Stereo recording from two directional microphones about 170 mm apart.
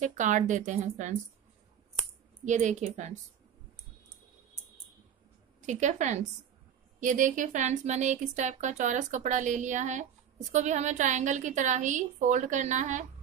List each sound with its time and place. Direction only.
0.0 s speech: 45° right (ahead or behind)
2.4 s speech: 45° right (ahead or behind)
5.7 s speech: 45° right (ahead or behind)